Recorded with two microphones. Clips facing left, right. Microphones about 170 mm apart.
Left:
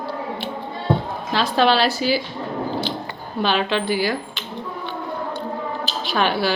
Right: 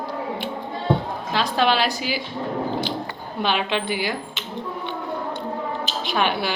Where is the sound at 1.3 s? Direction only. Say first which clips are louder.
Left 3 dB; 15° right (ahead or behind).